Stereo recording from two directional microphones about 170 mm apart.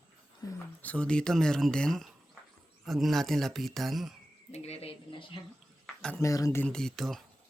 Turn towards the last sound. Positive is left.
turn(degrees=0)  # may be behind; listen again after turning